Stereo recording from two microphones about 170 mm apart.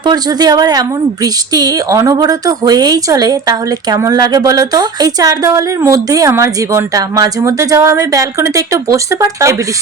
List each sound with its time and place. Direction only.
0.0 s speech: 25° right (ahead or behind)